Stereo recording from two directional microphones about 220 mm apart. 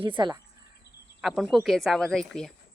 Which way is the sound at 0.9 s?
50° left (ahead or behind).